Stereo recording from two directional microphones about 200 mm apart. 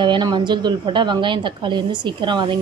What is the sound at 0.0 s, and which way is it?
A woman's voice, 20° right (ahead or behind).